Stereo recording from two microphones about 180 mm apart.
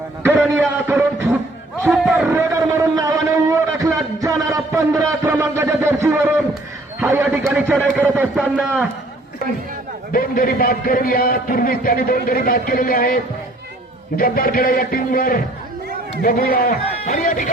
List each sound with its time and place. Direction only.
0.5 s a man's voice: 15° right (ahead or behind)
1.9 s a sound: 5° right (ahead or behind)
7.0 s a man's voice: 10° right (ahead or behind)
10.1 s a man's voice: 50° left (ahead or behind)